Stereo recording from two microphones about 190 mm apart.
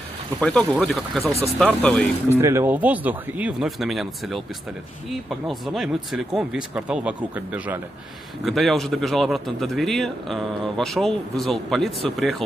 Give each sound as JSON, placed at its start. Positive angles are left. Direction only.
{"t": 0.4, "sound": "a man's voice", "side_deg": 0}
{"t": 2.2, "sound": "speech", "side_deg": -15}
{"t": 5.5, "sound": "a man's voice", "side_deg": 0}